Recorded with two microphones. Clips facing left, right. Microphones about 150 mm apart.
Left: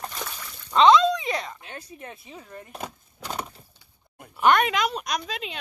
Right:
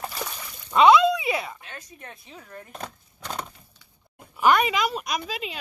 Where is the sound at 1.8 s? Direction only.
30° left (ahead or behind).